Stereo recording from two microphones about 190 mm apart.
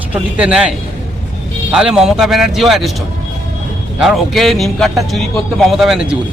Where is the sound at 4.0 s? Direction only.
Centre (ahead or behind).